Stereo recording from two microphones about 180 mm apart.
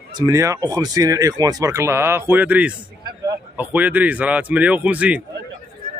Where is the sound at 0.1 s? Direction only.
20° right (ahead or behind).